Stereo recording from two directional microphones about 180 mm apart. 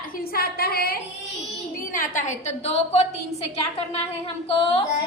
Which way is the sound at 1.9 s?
45° left (ahead or behind).